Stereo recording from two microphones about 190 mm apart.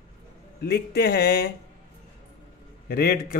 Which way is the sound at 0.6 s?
55° left (ahead or behind).